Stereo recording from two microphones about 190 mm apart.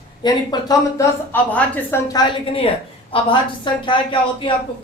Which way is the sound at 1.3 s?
10° left (ahead or behind).